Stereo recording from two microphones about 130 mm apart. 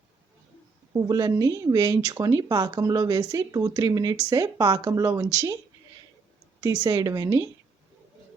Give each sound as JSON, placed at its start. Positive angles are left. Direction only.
{"t": 0.9, "sound": "speech", "side_deg": -30}
{"t": 6.8, "sound": "speech", "side_deg": -25}